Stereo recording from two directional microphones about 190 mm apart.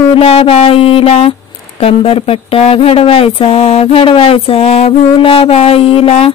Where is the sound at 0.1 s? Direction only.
35° left (ahead or behind).